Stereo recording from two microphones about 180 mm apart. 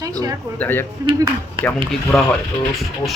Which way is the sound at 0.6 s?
10° left (ahead or behind).